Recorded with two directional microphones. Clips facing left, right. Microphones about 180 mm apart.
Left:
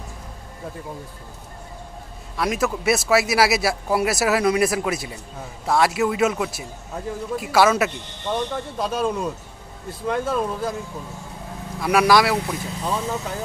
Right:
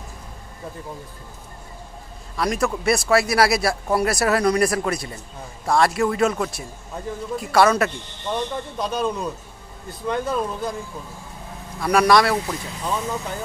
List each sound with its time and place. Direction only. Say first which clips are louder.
2.3 s a man's voice: even; 5° left (ahead or behind)
11.8 s a man's voice: even; 5° left (ahead or behind)